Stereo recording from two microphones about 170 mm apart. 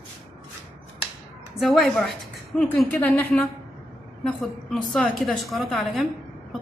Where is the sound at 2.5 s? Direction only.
5° left (ahead or behind).